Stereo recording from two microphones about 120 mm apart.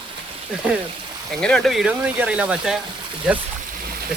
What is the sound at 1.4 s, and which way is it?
Speech, 5° left (ahead or behind).